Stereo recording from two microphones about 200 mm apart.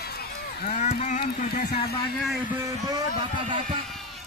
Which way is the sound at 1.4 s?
50° left (ahead or behind).